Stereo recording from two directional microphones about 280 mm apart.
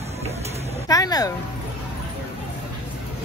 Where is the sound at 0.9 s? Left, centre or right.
Centre.